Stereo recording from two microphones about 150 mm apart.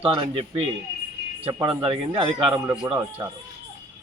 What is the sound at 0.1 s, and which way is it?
Speech, 35° right (ahead or behind).